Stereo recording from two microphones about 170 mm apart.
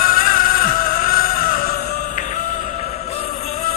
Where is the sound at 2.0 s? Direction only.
50° left (ahead or behind).